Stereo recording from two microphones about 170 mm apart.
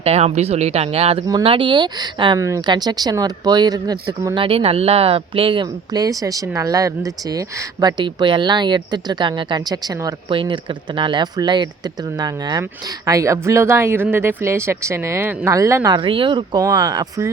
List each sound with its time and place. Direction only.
0.0 s speech: 35° right (ahead or behind); by 4.4 s 20° right (ahead or behind)
4.4 s speech: 35° right (ahead or behind)